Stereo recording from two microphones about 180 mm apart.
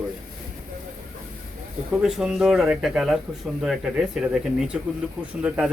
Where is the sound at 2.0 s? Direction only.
5° right (ahead or behind).